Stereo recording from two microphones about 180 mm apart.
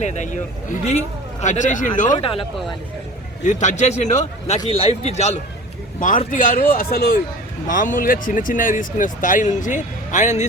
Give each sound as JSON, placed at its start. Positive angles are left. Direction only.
{"t": 0.0, "sound": "a man's voice", "side_deg": 40}
{"t": 2.1, "sound": "a man's voice", "side_deg": 30}
{"t": 3.4, "sound": "a man's voice", "side_deg": 40}